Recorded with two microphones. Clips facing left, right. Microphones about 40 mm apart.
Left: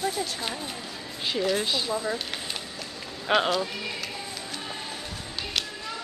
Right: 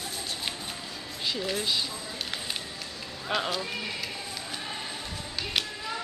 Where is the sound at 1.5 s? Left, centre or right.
Centre.